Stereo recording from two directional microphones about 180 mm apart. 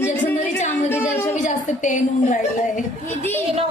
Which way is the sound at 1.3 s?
45° left (ahead or behind).